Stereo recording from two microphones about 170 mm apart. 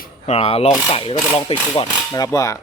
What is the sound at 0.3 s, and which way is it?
A man's voice, 35° left (ahead or behind).